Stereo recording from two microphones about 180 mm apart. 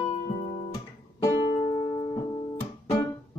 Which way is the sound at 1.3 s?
40° left (ahead or behind).